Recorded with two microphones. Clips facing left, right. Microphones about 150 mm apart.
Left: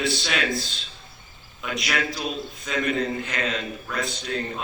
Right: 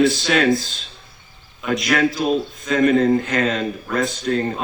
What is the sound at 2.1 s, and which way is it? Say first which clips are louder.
Speech: right 10 dB; 45° right (ahead or behind).